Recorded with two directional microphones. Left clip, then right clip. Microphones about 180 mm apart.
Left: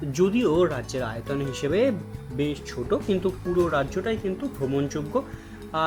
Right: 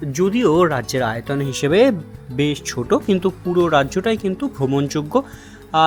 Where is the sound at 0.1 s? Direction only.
15° right (ahead or behind).